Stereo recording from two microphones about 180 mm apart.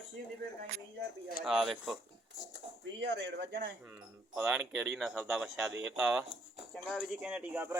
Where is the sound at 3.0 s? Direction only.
75° right (ahead or behind).